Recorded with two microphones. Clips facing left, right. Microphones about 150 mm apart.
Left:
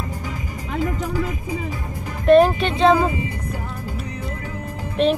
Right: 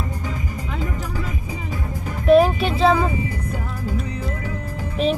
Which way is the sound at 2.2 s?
5° right (ahead or behind).